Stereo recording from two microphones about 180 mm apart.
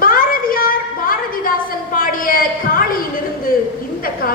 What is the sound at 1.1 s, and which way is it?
A woman's voice, 50° left (ahead or behind).